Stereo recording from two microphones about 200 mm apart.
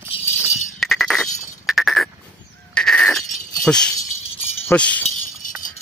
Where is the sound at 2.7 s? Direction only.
5° left (ahead or behind).